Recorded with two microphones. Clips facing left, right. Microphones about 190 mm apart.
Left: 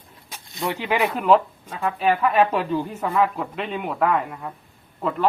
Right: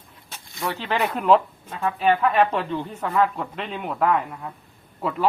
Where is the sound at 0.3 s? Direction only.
15° left (ahead or behind).